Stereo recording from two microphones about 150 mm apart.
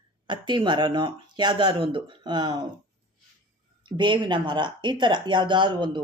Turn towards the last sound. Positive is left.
turn(degrees=-30)  # may be behind; listen again after turning